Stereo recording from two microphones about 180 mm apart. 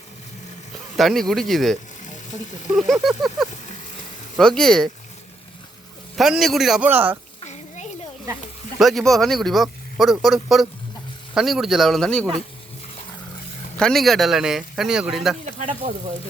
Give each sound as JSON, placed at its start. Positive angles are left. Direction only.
{"t": 0.9, "sound": "speech", "side_deg": 0}
{"t": 6.1, "sound": "speech", "side_deg": 0}
{"t": 8.8, "sound": "speech", "side_deg": 0}
{"t": 13.7, "sound": "speech", "side_deg": 0}
{"t": 15.5, "sound": "speech", "side_deg": -45}